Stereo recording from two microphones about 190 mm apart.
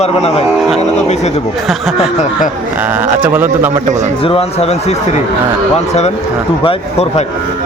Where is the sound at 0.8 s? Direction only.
35° left (ahead or behind).